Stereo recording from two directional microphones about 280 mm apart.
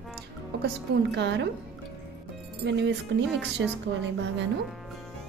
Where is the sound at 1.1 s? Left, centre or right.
Right.